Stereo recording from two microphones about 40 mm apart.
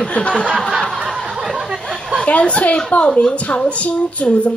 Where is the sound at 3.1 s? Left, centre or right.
Centre.